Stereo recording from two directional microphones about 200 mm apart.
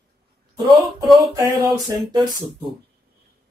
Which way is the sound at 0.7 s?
15° right (ahead or behind).